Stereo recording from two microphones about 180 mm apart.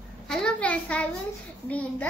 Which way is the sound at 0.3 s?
5° left (ahead or behind).